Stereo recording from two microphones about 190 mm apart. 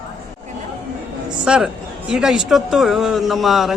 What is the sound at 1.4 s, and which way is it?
A man's voice, 5° right (ahead or behind).